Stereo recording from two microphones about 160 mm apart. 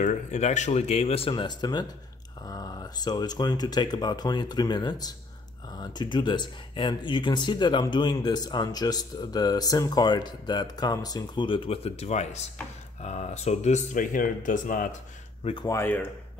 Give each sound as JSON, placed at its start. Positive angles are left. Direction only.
{"t": 0.0, "sound": "speech", "side_deg": 50}
{"t": 15.4, "sound": "speech", "side_deg": 30}
{"t": 15.7, "sound": "speech", "side_deg": 15}